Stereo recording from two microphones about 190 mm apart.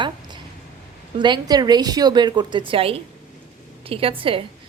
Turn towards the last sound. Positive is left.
turn(degrees=-30)  # may be behind; listen again after turning